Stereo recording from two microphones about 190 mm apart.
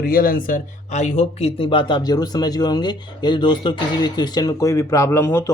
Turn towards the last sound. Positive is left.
turn(degrees=15)  # may be behind; listen again after turning